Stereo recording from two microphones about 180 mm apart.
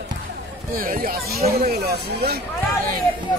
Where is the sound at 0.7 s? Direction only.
50° right (ahead or behind).